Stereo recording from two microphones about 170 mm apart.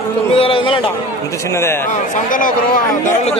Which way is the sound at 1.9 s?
50° left (ahead or behind).